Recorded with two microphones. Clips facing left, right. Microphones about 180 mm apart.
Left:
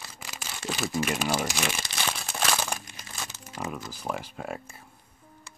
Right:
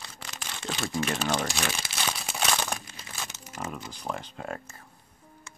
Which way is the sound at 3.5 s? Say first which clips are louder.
Left 2 dB; 10° left (ahead or behind).